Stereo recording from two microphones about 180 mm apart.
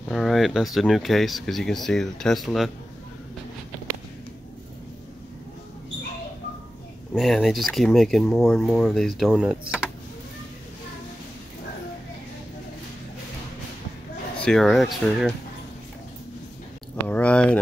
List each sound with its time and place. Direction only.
0.1 s speech: centre (ahead or behind)
7.2 s speech: centre (ahead or behind)
14.4 s speech: centre (ahead or behind)
16.9 s a sound: 10° left (ahead or behind)